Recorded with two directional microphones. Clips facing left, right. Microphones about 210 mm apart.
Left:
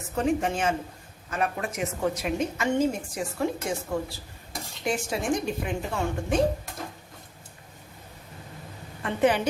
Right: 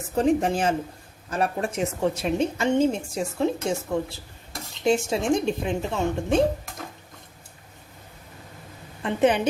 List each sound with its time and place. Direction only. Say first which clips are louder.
0.2 s a woman's voice: right 4 dB; 35° right (ahead or behind)
9.0 s a woman's voice: right 2 dB; 20° right (ahead or behind)